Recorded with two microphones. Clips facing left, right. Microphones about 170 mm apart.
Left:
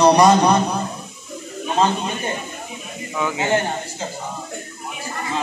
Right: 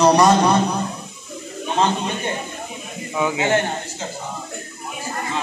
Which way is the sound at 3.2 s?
20° right (ahead or behind).